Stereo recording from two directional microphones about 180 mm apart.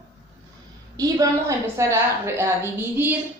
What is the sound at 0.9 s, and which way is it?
A woman's voice, 20° right (ahead or behind).